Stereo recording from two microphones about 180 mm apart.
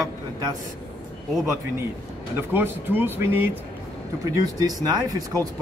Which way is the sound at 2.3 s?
10° right (ahead or behind).